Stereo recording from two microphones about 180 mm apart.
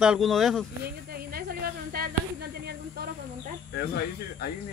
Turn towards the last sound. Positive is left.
turn(degrees=60)  # may be behind; listen again after turning